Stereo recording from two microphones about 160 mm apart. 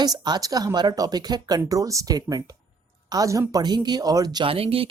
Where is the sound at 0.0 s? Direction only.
25° right (ahead or behind).